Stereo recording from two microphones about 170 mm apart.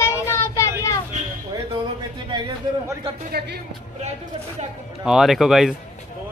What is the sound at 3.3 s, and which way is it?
Speech, 70° right (ahead or behind).